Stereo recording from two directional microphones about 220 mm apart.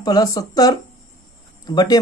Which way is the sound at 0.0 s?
15° left (ahead or behind).